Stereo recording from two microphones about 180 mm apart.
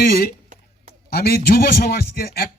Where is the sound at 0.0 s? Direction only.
55° left (ahead or behind).